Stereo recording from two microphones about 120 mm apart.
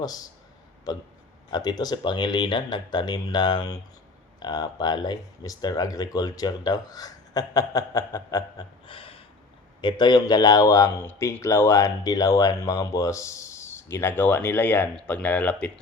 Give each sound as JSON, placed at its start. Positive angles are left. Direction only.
{"t": 0.0, "sound": "speech", "side_deg": 30}
{"t": 1.5, "sound": "speech", "side_deg": 35}
{"t": 8.9, "sound": "a sound", "side_deg": 50}
{"t": 9.8, "sound": "speech", "side_deg": 35}